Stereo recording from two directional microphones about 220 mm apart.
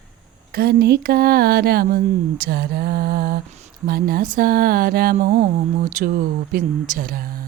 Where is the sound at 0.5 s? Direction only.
45° right (ahead or behind).